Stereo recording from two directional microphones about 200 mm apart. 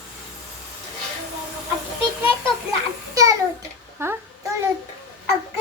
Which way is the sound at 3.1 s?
15° right (ahead or behind).